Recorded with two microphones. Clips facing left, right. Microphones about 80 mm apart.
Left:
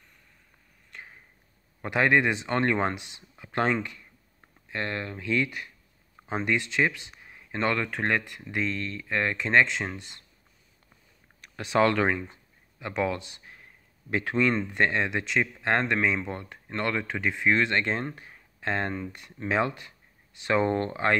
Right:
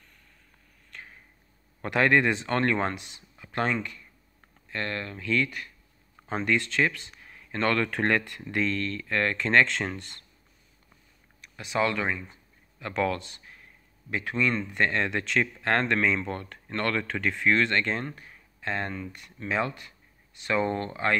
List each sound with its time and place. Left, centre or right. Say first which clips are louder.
0.9 s a sound: even; left
1.8 s speech: even; centre
11.4 s speech: left 4 dB; left
12.3 s speech: left 1 dB; centre
13.4 s a sound: left 1 dB; left
14.1 s speech: left 2 dB; left